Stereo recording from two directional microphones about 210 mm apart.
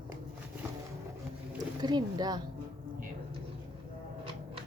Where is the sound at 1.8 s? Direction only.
20° right (ahead or behind).